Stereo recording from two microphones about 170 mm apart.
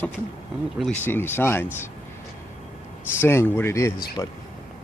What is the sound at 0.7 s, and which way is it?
Speech, 5° left (ahead or behind).